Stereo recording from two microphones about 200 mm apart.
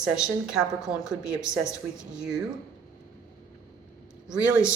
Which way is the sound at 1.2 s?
15° left (ahead or behind).